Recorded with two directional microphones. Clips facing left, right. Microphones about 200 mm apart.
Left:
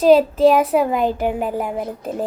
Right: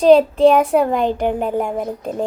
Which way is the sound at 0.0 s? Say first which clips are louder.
Right 2 dB; 5° left (ahead or behind).